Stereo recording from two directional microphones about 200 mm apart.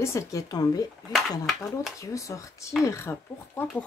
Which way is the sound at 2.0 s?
15° left (ahead or behind).